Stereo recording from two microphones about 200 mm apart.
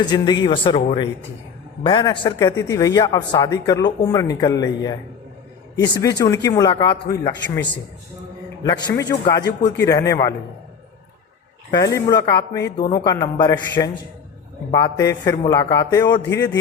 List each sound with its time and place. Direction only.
0.0 s a man's voice: 20° left (ahead or behind)
8.6 s a man's voice: 20° left (ahead or behind)
11.7 s a man's voice: 15° left (ahead or behind)